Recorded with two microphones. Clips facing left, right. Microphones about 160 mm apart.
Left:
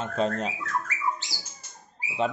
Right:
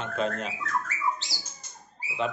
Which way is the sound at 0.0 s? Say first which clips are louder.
Left 3 dB; 35° left (ahead or behind).